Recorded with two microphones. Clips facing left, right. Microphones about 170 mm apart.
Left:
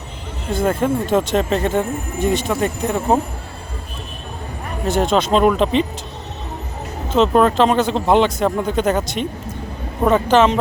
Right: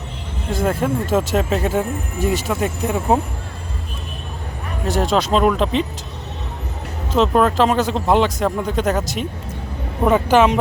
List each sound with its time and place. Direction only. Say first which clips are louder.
0.5 s speech: left 2 dB; centre (ahead or behind)
4.9 s speech: left 2 dB; centre (ahead or behind)
7.2 s speech: left 2 dB; centre (ahead or behind)